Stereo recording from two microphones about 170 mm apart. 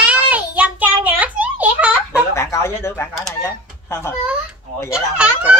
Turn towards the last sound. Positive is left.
turn(degrees=-5)  # may be behind; listen again after turning